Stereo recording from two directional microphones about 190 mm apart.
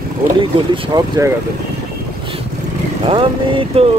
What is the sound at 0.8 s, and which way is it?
Boat, 20° right (ahead or behind).